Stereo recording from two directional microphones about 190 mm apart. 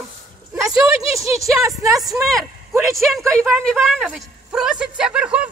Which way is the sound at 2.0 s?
Centre (ahead or behind).